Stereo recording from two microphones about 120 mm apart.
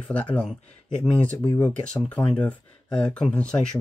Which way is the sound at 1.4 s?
30° left (ahead or behind).